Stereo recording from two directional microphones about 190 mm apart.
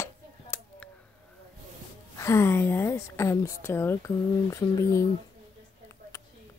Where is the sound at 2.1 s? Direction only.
15° left (ahead or behind).